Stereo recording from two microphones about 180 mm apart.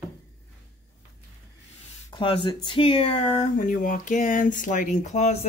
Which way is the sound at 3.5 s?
50° left (ahead or behind).